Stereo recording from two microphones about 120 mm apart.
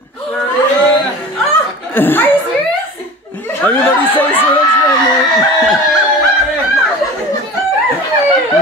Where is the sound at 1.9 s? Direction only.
15° left (ahead or behind).